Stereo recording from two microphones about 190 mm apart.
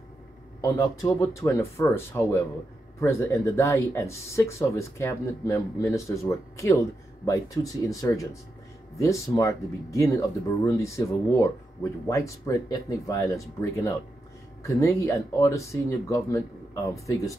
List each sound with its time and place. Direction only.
1.0 s speech: 15° left (ahead or behind)